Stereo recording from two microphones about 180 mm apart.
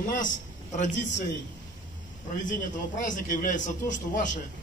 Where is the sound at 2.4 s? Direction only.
45° left (ahead or behind).